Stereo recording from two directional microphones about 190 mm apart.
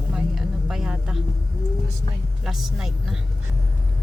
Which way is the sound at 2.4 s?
Centre (ahead or behind).